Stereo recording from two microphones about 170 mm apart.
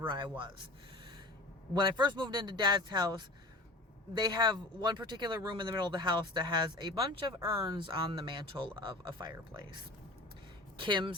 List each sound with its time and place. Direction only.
0.0 s speech: 30° right (ahead or behind)
10.8 s speech: 30° right (ahead or behind)